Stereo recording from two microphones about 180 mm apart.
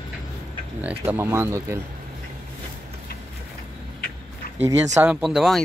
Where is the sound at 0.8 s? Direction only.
10° right (ahead or behind).